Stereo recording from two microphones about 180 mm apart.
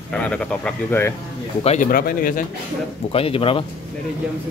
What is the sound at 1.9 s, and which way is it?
Speech, 55° left (ahead or behind).